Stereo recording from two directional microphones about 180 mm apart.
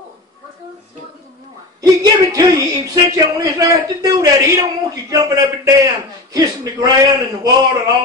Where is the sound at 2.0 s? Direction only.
20° right (ahead or behind).